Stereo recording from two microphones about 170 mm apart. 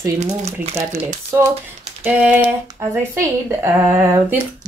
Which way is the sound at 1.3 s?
15° right (ahead or behind).